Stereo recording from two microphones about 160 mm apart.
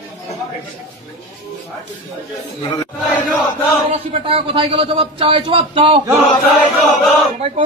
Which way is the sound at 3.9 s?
35° right (ahead or behind).